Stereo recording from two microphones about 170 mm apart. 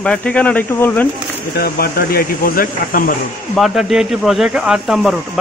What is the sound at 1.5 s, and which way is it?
Speech, 65° left (ahead or behind).